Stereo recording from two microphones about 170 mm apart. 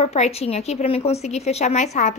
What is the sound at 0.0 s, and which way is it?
A woman's voice, 40° left (ahead or behind).